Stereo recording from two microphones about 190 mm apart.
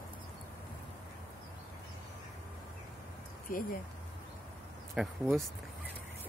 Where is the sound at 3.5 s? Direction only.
50° left (ahead or behind).